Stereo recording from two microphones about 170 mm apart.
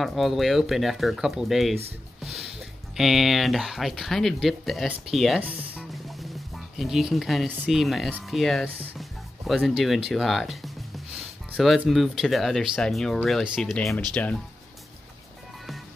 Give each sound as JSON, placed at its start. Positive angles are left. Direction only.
{"t": 0.0, "sound": "speech", "side_deg": 0}
{"t": 3.0, "sound": "speech", "side_deg": 0}